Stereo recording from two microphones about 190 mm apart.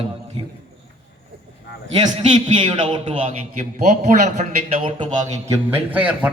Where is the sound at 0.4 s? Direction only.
25° right (ahead or behind).